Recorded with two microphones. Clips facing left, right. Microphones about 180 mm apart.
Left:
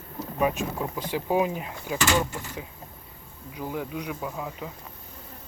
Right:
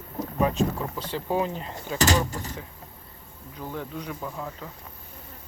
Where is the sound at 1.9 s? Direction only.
40° right (ahead or behind).